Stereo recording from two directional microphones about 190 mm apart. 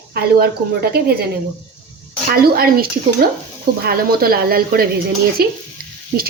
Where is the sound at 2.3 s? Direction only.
50° right (ahead or behind).